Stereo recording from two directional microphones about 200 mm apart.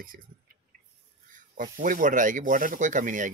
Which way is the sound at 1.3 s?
40° right (ahead or behind).